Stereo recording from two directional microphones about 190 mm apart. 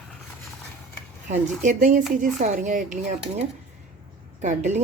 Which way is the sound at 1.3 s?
40° right (ahead or behind).